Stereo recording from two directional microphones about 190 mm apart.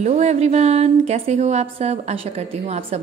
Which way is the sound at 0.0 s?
35° right (ahead or behind).